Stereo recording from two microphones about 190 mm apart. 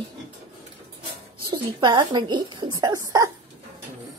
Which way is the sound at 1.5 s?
25° right (ahead or behind).